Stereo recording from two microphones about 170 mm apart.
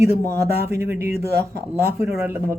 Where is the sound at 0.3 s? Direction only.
15° right (ahead or behind).